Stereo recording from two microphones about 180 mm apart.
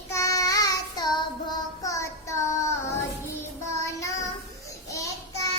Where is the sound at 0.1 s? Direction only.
15° left (ahead or behind).